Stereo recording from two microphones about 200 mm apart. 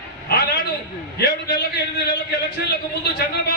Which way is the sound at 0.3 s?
50° left (ahead or behind).